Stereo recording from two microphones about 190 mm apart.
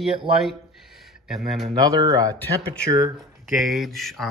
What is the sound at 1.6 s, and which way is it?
Speech, 20° right (ahead or behind).